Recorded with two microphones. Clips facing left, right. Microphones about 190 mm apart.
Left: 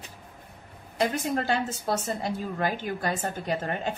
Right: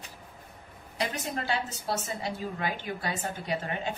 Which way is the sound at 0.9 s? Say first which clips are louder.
Left 6 dB; 50° left (ahead or behind).